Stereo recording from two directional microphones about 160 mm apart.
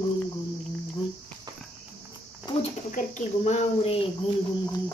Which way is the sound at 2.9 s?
50° left (ahead or behind).